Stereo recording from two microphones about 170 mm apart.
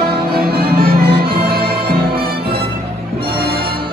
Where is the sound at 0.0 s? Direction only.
65° right (ahead or behind).